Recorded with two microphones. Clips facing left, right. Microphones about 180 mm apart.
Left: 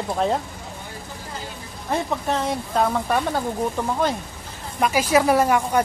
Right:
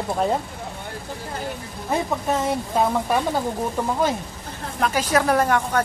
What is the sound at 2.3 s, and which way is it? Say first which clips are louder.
Speech: right 2 dB; 5° right (ahead or behind).